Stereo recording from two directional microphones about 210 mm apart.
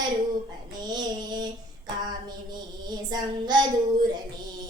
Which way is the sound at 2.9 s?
20° right (ahead or behind).